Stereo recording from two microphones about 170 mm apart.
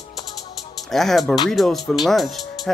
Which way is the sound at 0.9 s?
Centre (ahead or behind).